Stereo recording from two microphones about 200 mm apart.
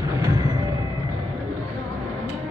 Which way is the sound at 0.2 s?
20° right (ahead or behind).